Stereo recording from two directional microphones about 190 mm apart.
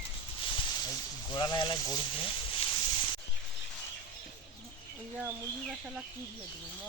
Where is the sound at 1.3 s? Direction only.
25° left (ahead or behind).